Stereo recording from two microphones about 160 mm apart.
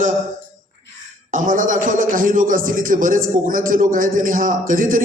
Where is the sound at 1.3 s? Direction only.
55° right (ahead or behind).